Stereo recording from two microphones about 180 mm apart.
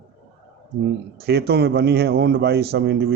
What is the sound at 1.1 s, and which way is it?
Speech, 60° right (ahead or behind).